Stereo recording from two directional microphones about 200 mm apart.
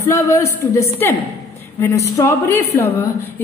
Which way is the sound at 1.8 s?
15° left (ahead or behind).